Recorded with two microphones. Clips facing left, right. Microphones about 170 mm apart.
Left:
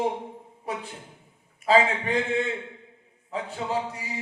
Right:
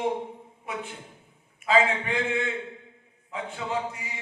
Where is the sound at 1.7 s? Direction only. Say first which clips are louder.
Left 2 dB; 35° left (ahead or behind).